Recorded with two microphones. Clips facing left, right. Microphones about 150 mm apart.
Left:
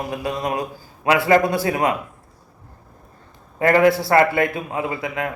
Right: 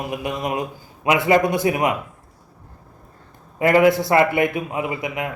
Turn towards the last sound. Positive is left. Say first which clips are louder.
# even
turn(degrees=-20)  # may be behind; listen again after turning